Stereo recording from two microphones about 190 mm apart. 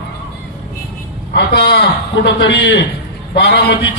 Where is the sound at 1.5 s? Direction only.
60° left (ahead or behind).